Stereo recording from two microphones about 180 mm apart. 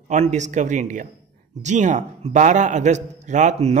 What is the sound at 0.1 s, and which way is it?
A man's voice, 40° right (ahead or behind).